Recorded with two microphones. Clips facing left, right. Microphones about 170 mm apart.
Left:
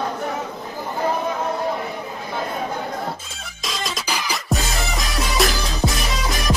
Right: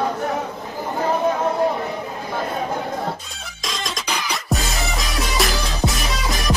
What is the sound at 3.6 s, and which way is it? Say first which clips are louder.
Music: even; centre (ahead or behind).